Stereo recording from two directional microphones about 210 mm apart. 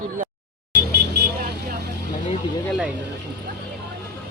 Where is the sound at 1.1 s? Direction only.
50° right (ahead or behind).